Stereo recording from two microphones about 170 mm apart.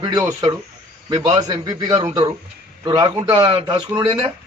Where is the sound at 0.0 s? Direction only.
25° right (ahead or behind).